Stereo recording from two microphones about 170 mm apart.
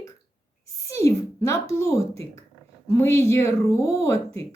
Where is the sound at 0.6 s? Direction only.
20° left (ahead or behind).